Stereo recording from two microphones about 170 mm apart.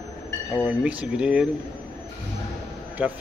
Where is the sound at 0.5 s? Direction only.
5° right (ahead or behind).